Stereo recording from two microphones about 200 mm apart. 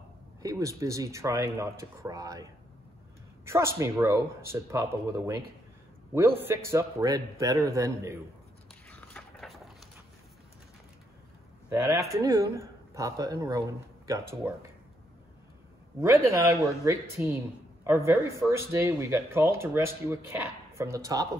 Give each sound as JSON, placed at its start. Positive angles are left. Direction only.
{"t": 0.4, "sound": "speech", "side_deg": -15}
{"t": 3.4, "sound": "speech", "side_deg": -15}
{"t": 8.8, "sound": "biting", "side_deg": 5}
{"t": 11.7, "sound": "speech", "side_deg": -15}
{"t": 16.0, "sound": "speech", "side_deg": -15}